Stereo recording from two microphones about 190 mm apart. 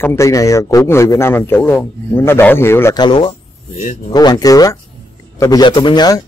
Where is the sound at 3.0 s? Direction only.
25° left (ahead or behind).